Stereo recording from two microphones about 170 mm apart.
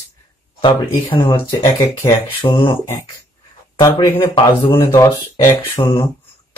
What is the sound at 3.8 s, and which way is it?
Speech, 20° left (ahead or behind).